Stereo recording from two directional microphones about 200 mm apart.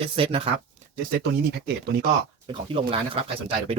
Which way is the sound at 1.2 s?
55° right (ahead or behind).